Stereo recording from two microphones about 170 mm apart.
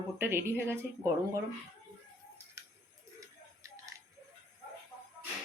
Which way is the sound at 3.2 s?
20° right (ahead or behind).